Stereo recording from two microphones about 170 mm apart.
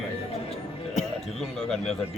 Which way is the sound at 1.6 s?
Centre (ahead or behind).